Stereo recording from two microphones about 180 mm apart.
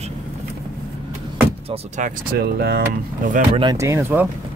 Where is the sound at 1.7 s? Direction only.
45° right (ahead or behind).